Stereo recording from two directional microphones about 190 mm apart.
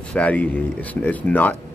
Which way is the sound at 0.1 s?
5° left (ahead or behind).